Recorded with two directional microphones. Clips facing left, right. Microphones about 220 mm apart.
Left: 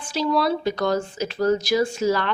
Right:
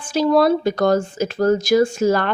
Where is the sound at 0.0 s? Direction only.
50° right (ahead or behind).